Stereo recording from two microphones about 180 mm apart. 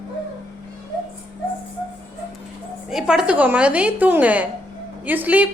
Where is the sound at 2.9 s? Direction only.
Centre (ahead or behind).